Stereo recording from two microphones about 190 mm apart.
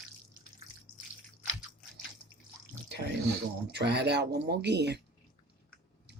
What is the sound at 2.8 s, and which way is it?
Drip, 65° right (ahead or behind).